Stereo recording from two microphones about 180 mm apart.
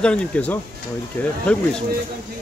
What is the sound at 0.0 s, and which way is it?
Speech, 5° left (ahead or behind).